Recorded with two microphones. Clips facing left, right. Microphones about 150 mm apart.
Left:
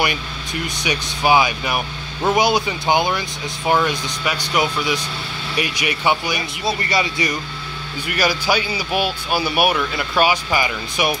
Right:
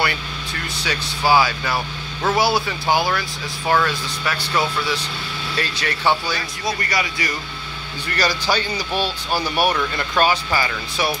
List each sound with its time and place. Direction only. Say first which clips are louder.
0.0 s speech: left 1 dB; 15° left (ahead or behind)
6.6 s speech: left 3 dB; 25° left (ahead or behind)
8.1 s speech: left 2 dB; 10° left (ahead or behind)